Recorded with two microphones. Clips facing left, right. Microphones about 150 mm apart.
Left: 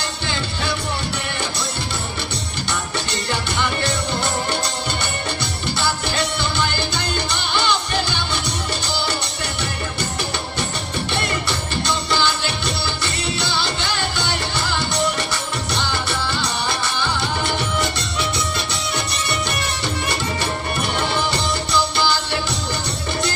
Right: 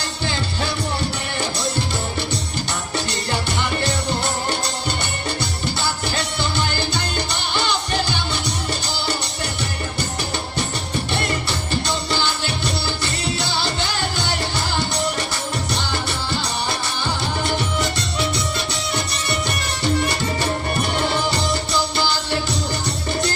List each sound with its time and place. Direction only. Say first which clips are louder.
11.4 s music: even; 40° right (ahead or behind)
15.9 s music: left 1 dB; 40° right (ahead or behind)
21.9 s music: left 1 dB; 40° right (ahead or behind)